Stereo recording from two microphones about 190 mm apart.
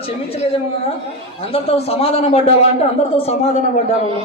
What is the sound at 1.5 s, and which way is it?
Speech, 30° left (ahead or behind).